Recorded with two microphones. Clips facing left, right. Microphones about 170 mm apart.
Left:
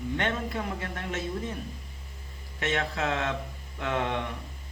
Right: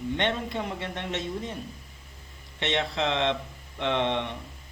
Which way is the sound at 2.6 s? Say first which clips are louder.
Right 2 dB; 25° right (ahead or behind).